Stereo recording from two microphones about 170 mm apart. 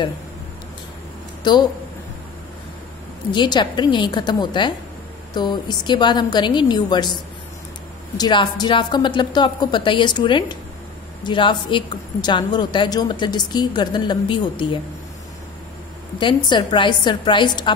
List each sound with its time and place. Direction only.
1.5 s a woman's voice: 25° left (ahead or behind)
3.3 s a woman's voice: 25° left (ahead or behind)
8.2 s a woman's voice: 25° left (ahead or behind)
16.4 s a woman's voice: 25° left (ahead or behind)